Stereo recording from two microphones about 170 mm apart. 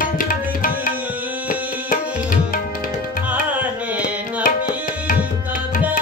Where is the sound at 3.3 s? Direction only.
10° right (ahead or behind).